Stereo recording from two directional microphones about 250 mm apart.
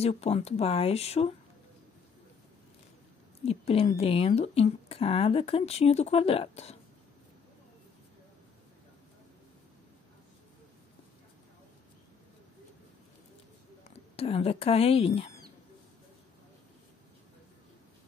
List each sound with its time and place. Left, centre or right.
0.0 s speech: left
3.4 s speech: left
14.1 s speech: left